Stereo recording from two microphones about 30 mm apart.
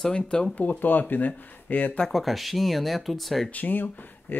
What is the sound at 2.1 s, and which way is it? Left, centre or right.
Speech, centre.